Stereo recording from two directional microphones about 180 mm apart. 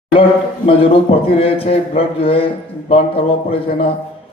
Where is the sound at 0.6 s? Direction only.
30° left (ahead or behind).